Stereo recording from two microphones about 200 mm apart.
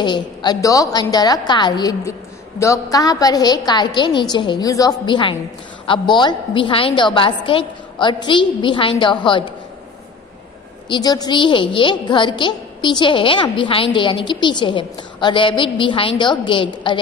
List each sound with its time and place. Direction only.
0.0 s a woman's voice: 20° left (ahead or behind)
10.9 s a woman's voice: 20° left (ahead or behind)